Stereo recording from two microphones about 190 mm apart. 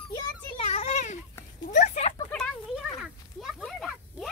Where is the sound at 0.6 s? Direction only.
35° left (ahead or behind).